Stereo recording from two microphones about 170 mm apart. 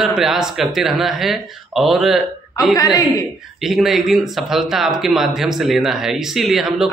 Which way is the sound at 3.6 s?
Centre (ahead or behind).